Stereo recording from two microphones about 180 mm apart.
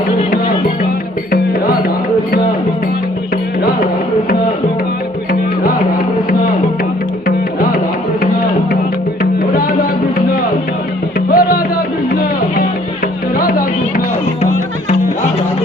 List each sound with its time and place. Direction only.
11.3 s music: 55° left (ahead or behind)
13.4 s music: 50° left (ahead or behind)